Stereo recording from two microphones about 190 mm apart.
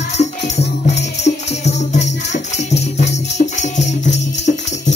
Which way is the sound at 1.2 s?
35° left (ahead or behind).